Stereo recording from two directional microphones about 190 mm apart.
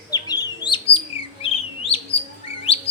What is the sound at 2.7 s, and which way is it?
Chirp, 30° left (ahead or behind).